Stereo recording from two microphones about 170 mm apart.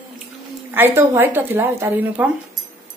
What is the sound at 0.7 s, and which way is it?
Speech, 10° right (ahead or behind).